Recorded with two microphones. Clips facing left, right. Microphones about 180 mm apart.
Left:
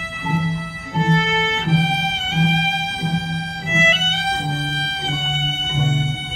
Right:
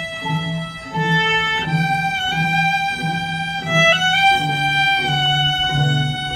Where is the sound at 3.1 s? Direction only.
70° right (ahead or behind).